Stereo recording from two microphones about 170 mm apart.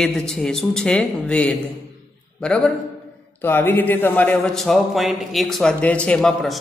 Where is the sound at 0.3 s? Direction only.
5° left (ahead or behind).